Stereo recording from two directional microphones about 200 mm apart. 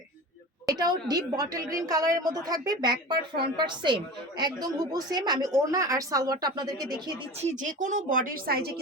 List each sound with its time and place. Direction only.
0.7 s a woman's voice: 20° right (ahead or behind)
7.5 s a woman's voice: 40° right (ahead or behind)